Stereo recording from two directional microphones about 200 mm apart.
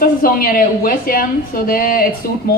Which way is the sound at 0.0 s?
45° left (ahead or behind).